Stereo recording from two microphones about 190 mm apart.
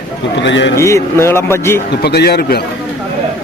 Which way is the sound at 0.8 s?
15° left (ahead or behind).